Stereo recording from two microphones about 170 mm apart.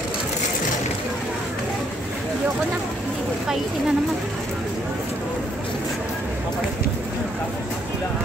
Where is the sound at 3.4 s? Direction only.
5° right (ahead or behind).